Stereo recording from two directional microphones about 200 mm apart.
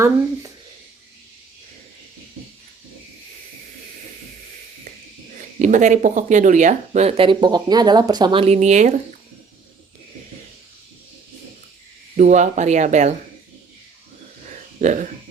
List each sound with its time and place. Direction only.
5.5 s speech: 40° right (ahead or behind)
12.1 s speech: 35° right (ahead or behind)
14.8 s speech: 40° right (ahead or behind)